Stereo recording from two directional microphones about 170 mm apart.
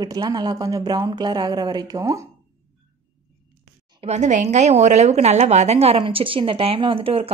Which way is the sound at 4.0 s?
45° right (ahead or behind).